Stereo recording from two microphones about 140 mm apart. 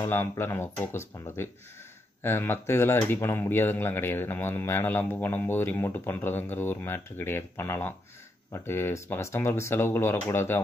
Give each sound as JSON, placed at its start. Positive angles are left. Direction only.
{"t": 0.0, "sound": "speech", "side_deg": 15}